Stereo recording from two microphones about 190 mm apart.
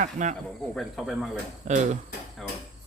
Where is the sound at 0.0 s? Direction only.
40° right (ahead or behind).